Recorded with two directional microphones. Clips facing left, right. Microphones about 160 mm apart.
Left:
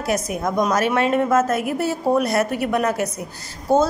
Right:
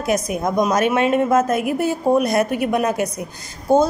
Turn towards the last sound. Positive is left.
turn(degrees=-15)  # may be behind; listen again after turning